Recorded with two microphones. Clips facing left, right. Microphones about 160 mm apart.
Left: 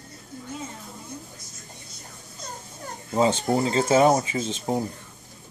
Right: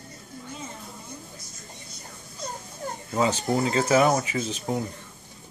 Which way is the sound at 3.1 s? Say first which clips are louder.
Left 3 dB; 25° left (ahead or behind).